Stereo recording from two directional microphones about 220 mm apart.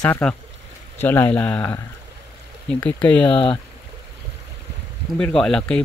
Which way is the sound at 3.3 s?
25° left (ahead or behind).